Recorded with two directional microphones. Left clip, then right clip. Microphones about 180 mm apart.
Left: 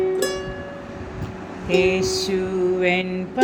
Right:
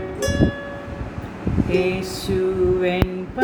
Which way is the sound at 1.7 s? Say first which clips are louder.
Left 4 dB; 35° left (ahead or behind).